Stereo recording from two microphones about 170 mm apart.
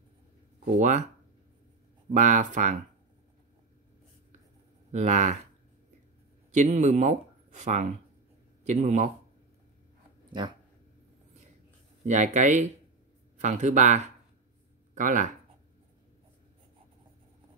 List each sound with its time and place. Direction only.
0.7 s speech: 45° right (ahead or behind)
2.1 s speech: 45° right (ahead or behind)
4.9 s speech: 40° right (ahead or behind)
6.5 s speech: 45° right (ahead or behind)
12.1 s speech: 45° right (ahead or behind)